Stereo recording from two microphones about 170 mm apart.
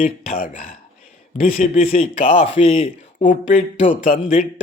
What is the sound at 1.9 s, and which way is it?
Speech, 40° left (ahead or behind).